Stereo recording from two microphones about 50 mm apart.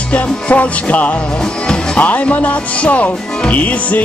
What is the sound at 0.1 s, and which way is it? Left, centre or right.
Speech, left.